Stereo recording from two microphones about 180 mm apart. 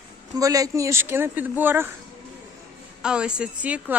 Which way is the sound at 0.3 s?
20° right (ahead or behind).